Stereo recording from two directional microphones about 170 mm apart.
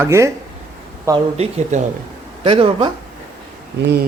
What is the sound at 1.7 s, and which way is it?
Speech, 45° right (ahead or behind).